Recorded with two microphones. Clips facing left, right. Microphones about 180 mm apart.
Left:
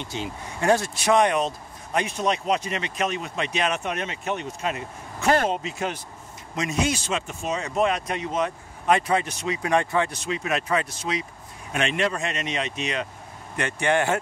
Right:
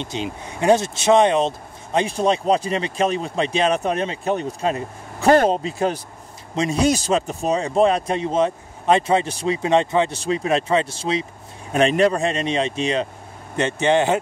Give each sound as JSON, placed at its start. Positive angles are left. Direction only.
{"t": 0.0, "sound": "a man's voice", "side_deg": -20}